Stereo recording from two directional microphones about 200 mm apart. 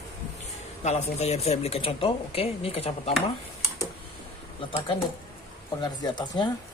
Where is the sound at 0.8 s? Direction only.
35° left (ahead or behind).